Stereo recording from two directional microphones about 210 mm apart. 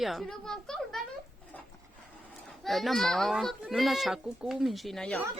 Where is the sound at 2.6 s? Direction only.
Centre (ahead or behind).